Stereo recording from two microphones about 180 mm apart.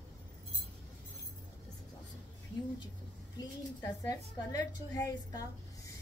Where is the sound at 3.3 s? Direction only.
20° left (ahead or behind).